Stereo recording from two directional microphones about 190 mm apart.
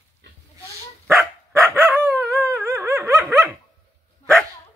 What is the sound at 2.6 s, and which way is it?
Dog, 15° right (ahead or behind).